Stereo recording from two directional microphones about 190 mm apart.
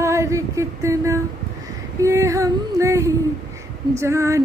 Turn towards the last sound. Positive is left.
turn(degrees=-15)  # may be behind; listen again after turning